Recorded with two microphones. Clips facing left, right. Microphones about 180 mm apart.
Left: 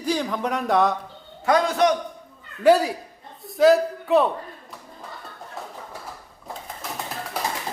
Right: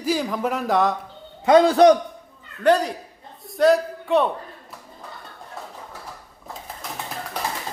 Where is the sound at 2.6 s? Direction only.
10° left (ahead or behind).